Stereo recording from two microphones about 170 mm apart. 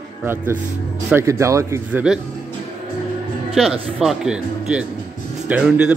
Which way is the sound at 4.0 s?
Centre (ahead or behind).